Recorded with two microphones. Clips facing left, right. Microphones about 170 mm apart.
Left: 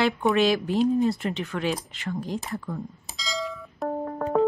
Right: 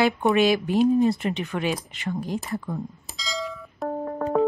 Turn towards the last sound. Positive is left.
turn(degrees=0)  # may be behind; listen again after turning